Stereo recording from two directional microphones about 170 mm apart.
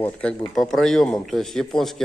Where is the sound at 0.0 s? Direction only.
10° left (ahead or behind).